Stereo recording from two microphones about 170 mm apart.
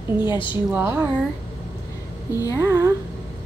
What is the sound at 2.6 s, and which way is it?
Speech, 15° right (ahead or behind).